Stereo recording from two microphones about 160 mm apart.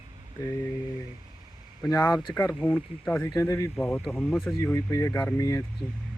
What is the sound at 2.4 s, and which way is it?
Speech, 10° left (ahead or behind).